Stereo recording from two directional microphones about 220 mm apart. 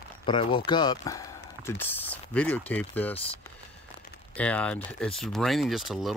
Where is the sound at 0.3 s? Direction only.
25° left (ahead or behind); by 3.2 s 5° left (ahead or behind).